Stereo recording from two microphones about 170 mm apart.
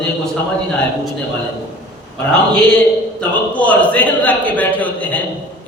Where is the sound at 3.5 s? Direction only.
10° left (ahead or behind).